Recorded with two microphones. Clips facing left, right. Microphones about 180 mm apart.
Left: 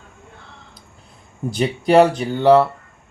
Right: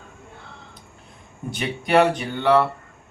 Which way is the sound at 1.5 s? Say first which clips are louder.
Left 7 dB; 35° left (ahead or behind).